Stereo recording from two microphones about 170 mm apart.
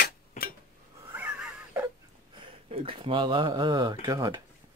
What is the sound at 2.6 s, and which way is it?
Speech, 35° right (ahead or behind).